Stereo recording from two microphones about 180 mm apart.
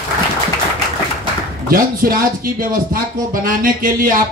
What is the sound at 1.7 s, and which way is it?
Speech, 50° right (ahead or behind).